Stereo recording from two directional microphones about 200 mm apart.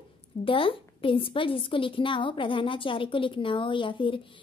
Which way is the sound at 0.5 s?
25° left (ahead or behind).